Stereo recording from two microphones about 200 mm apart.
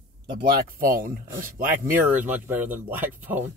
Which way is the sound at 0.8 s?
45° right (ahead or behind).